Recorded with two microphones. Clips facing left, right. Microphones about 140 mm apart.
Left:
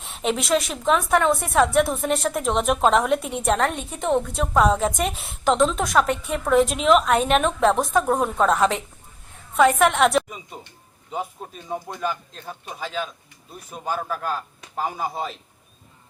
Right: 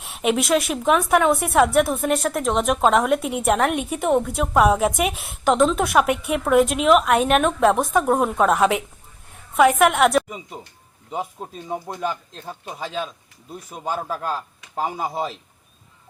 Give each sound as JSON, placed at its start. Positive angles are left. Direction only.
{"t": 0.0, "sound": "a woman's voice", "side_deg": -5}
{"t": 11.1, "sound": "speech", "side_deg": -20}
{"t": 13.8, "sound": "speech", "side_deg": -25}